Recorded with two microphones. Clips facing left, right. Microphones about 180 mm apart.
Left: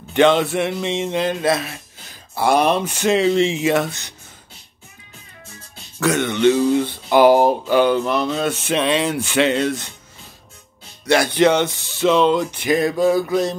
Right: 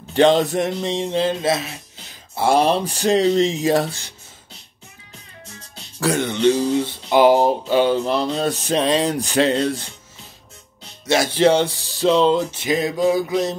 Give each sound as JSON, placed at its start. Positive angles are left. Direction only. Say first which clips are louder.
{"t": 0.1, "sound": "speech", "louder": "even", "side_deg": -35}
{"t": 5.9, "sound": "speech", "louder": "left 1 dB", "side_deg": -35}
{"t": 7.1, "sound": "speech", "louder": "left 1 dB", "side_deg": -20}
{"t": 7.6, "sound": "music", "louder": "left 1 dB", "side_deg": -25}
{"t": 8.0, "sound": "speech", "louder": "even", "side_deg": -30}
{"t": 11.2, "sound": "music", "louder": "right 3 dB", "side_deg": -30}